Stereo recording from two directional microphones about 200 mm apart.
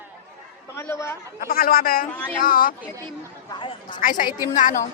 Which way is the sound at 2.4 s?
45° left (ahead or behind).